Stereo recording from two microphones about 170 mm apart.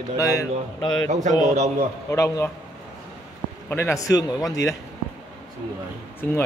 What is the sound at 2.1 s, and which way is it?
Speech, 15° left (ahead or behind).